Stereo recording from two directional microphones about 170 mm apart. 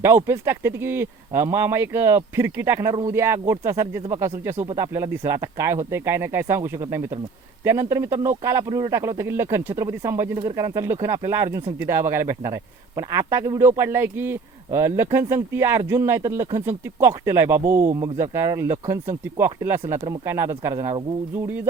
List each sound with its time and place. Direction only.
0.0 s speech: 15° right (ahead or behind)
4.5 s speech: 35° right (ahead or behind)
4.8 s speech: 15° right (ahead or behind)